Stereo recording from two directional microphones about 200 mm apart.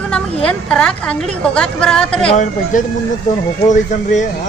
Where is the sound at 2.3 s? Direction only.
40° left (ahead or behind).